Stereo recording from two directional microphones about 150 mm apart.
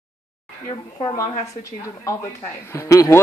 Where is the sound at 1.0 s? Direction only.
30° left (ahead or behind).